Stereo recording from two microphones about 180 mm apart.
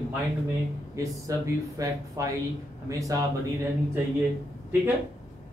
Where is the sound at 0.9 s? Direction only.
20° right (ahead or behind).